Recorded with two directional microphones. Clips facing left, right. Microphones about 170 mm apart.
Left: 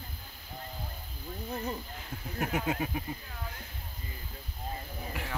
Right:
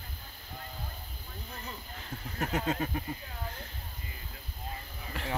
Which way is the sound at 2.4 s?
10° left (ahead or behind).